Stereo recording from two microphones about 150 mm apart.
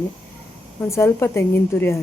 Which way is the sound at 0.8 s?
20° left (ahead or behind).